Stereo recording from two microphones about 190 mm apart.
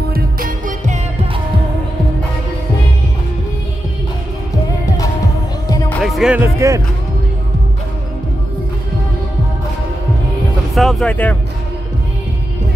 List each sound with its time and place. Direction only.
0.1 s music: 50° right (ahead or behind)
5.9 s speech: centre (ahead or behind)
10.7 s speech: centre (ahead or behind)